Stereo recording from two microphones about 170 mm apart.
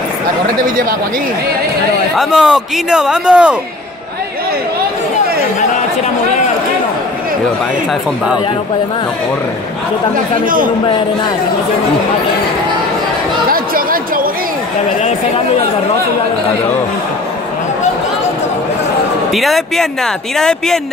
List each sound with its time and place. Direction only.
2.1 s speech: 5° right (ahead or behind)
10.4 s speech: 55° right (ahead or behind)
13.5 s chatter: 55° right (ahead or behind)
15.0 s speech: 40° left (ahead or behind)
19.3 s speech: centre (ahead or behind)